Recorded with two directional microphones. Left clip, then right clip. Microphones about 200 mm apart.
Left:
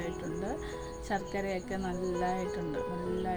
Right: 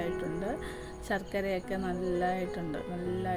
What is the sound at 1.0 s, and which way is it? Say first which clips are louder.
Speech: right 2 dB; 35° right (ahead or behind).